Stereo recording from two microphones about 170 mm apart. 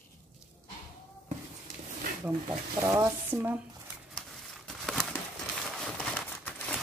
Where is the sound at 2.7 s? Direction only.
20° right (ahead or behind).